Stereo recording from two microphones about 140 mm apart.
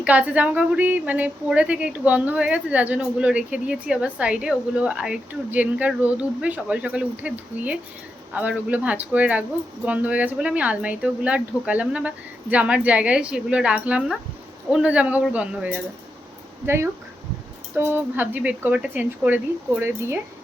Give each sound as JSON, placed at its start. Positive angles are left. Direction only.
{"t": 0.0, "sound": "a woman's voice", "side_deg": -10}